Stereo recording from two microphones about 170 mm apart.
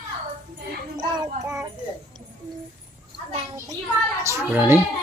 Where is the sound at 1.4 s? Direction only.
15° right (ahead or behind).